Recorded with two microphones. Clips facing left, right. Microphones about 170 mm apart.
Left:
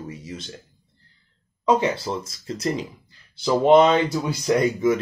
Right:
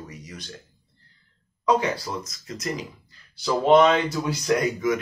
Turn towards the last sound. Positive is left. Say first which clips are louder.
# left 3 dB
turn(degrees=25)  # may be behind; listen again after turning